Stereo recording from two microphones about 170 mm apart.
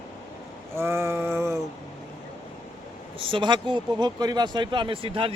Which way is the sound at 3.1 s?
30° right (ahead or behind).